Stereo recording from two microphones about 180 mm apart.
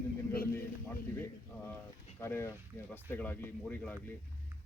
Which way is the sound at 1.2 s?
10° left (ahead or behind).